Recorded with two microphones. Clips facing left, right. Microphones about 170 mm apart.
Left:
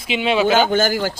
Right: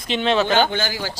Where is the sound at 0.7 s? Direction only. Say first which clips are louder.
Left 7 dB; 50° left (ahead or behind).